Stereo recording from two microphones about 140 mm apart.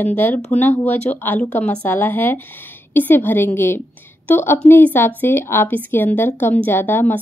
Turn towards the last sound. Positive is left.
turn(degrees=15)  # may be behind; listen again after turning